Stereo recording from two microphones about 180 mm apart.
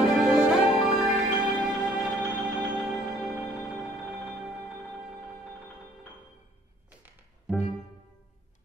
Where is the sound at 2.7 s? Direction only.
5° right (ahead or behind).